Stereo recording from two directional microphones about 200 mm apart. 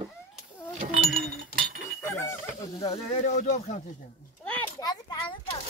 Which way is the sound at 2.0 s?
10° left (ahead or behind).